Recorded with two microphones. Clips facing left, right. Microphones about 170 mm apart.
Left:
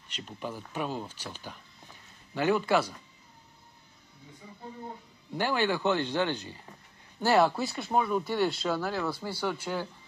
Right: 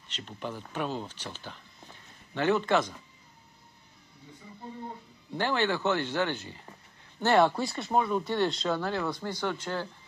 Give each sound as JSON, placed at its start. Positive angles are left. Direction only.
{"t": 0.1, "sound": "speech", "side_deg": 5}
{"t": 5.3, "sound": "speech", "side_deg": 10}